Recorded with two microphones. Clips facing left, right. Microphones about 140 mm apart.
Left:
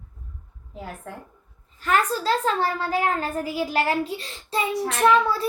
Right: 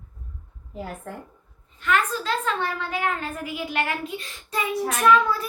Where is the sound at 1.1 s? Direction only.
Centre (ahead or behind).